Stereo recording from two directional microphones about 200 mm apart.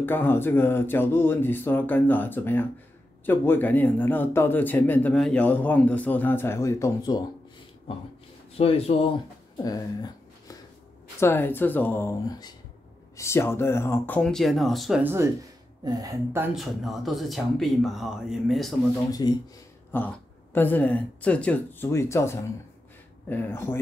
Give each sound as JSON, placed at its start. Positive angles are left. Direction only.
{"t": 0.0, "sound": "speech", "side_deg": 10}
{"t": 8.5, "sound": "speech", "side_deg": 30}
{"t": 9.6, "sound": "a sound", "side_deg": 20}
{"t": 11.1, "sound": "speech", "side_deg": 10}
{"t": 16.5, "sound": "speech", "side_deg": 0}
{"t": 19.2, "sound": "speech", "side_deg": 20}
{"t": 19.9, "sound": "speech", "side_deg": 10}